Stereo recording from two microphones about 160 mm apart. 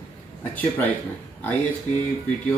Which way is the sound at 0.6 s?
10° left (ahead or behind).